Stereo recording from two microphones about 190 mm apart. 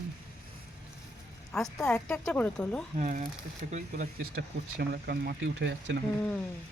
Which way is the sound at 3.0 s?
40° right (ahead or behind).